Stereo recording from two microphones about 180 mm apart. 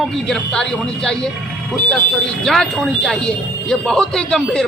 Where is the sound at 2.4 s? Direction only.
Centre (ahead or behind).